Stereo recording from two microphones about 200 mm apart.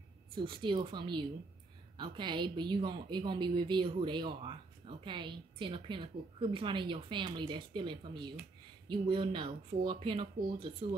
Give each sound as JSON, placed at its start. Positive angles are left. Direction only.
{"t": 0.4, "sound": "a woman's voice", "side_deg": -25}